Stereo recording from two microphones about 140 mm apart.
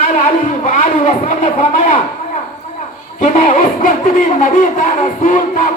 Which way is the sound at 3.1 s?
70° left (ahead or behind).